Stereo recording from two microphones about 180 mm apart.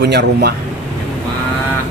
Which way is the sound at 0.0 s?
65° right (ahead or behind).